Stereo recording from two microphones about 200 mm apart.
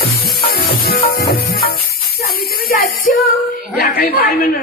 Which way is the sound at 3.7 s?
50° left (ahead or behind).